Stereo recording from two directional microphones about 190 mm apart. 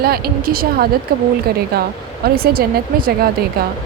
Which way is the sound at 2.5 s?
50° right (ahead or behind).